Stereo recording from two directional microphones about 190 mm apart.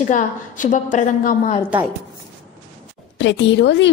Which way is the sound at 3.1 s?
70° left (ahead or behind).